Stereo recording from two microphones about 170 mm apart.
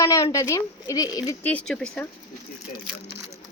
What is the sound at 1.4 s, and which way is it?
Speech, 10° left (ahead or behind).